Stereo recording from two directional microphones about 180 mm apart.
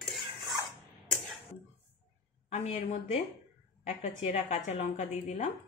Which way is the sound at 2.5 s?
35° left (ahead or behind).